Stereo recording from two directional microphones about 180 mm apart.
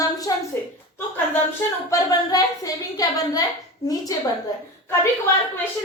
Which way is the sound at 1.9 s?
20° left (ahead or behind).